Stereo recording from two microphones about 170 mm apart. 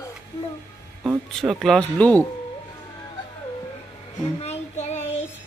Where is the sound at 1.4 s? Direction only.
Centre (ahead or behind).